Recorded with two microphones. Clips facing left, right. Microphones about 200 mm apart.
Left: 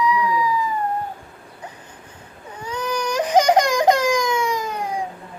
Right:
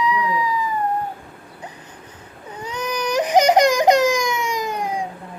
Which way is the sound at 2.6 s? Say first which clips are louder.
Even; 20° right (ahead or behind).